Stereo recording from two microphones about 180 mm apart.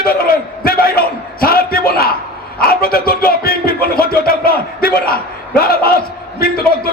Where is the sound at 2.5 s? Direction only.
55° left (ahead or behind).